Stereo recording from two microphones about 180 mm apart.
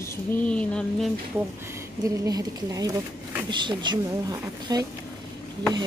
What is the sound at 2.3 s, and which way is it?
Speech, 20° right (ahead or behind).